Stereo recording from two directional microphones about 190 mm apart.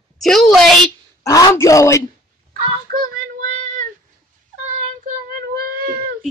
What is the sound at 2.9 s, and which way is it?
Child singing, 45° right (ahead or behind).